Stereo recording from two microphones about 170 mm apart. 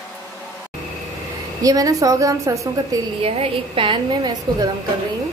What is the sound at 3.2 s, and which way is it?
A woman's voice, 35° right (ahead or behind).